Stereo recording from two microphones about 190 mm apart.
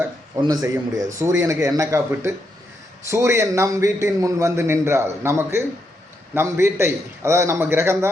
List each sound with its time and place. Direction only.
0.0 s a man's voice: 20° right (ahead or behind)